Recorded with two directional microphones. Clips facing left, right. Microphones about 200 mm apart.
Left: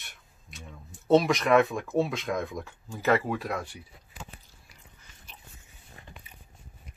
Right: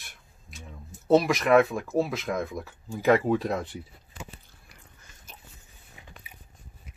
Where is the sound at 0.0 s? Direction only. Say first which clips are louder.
Right 1 dB; centre (ahead or behind); by 3.7 s 20° right (ahead or behind).